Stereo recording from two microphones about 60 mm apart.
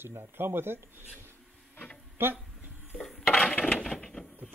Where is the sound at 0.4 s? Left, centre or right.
Right.